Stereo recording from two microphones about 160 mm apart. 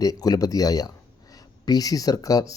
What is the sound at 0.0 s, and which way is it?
A man's voice, 25° left (ahead or behind).